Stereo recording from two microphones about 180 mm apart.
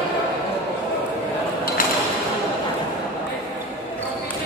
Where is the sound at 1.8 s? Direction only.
50° left (ahead or behind).